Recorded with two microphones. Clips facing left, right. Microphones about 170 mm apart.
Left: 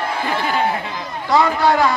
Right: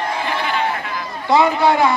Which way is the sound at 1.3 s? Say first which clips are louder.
Right 1 dB; 25° right (ahead or behind).